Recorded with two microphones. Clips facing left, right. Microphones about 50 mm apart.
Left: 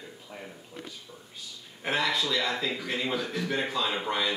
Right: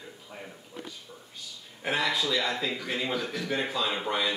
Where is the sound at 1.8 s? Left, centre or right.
Centre.